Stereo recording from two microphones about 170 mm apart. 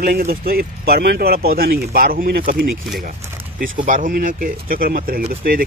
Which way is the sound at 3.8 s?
50° right (ahead or behind).